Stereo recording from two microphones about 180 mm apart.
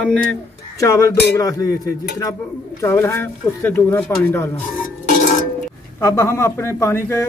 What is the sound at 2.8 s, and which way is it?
A man's voice, 15° left (ahead or behind).